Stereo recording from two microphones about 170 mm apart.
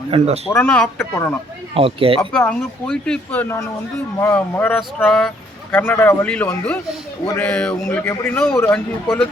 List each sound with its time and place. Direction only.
0.1 s speech: 35° right (ahead or behind)
0.5 s a man's voice: 10° left (ahead or behind)
1.7 s speech: 35° right (ahead or behind)
2.4 s a man's voice: 10° left (ahead or behind)